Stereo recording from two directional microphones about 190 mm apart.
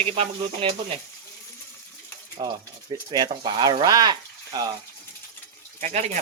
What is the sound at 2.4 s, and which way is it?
Speech, 25° right (ahead or behind).